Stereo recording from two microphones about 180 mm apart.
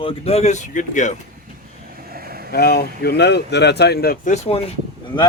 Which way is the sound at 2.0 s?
55° right (ahead or behind).